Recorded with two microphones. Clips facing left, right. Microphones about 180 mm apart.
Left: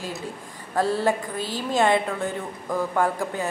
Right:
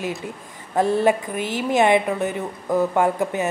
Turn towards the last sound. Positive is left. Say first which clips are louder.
# right 4 dB
turn(degrees=-20)  # may be behind; listen again after turning